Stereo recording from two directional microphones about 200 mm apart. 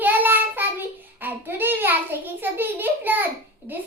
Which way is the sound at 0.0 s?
10° right (ahead or behind).